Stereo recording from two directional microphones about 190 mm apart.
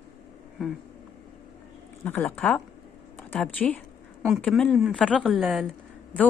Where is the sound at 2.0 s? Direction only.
10° left (ahead or behind).